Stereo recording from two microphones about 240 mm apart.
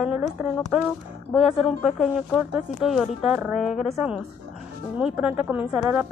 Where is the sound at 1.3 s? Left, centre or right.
Centre.